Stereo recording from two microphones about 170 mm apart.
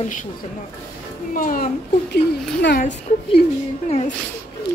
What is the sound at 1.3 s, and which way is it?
Speech, 55° left (ahead or behind).